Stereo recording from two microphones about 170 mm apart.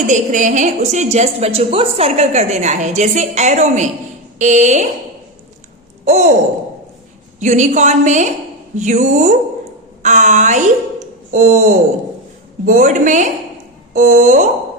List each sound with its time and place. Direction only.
0.1 s a woman's voice: 50° right (ahead or behind)
6.1 s a sound: 40° right (ahead or behind)
7.3 s a woman's voice: 45° right (ahead or behind)